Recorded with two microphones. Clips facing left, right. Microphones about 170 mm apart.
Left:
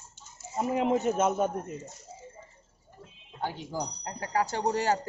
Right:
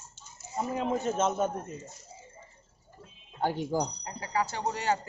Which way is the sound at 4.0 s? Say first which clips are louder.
Left 2 dB; 50° left (ahead or behind).